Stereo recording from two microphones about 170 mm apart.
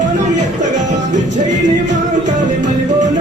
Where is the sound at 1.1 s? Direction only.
45° right (ahead or behind).